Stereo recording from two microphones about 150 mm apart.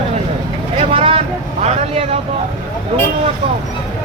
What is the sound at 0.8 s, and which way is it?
Vehicle, 40° right (ahead or behind).